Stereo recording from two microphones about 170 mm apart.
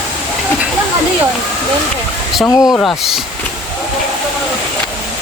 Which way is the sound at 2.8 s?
Centre (ahead or behind).